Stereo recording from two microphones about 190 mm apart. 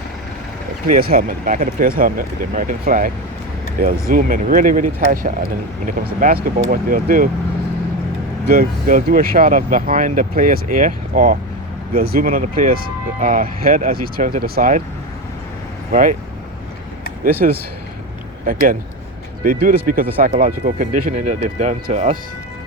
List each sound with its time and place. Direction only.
0.9 s speech: 50° right (ahead or behind)
8.4 s speech: 45° right (ahead or behind)
15.9 s speech: 45° right (ahead or behind)
17.4 s speech: 45° right (ahead or behind)